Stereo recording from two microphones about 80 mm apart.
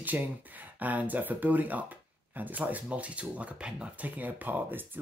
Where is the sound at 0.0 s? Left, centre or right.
Right.